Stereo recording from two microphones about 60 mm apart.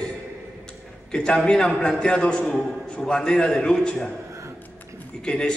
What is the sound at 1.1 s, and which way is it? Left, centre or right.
A man's voice, centre.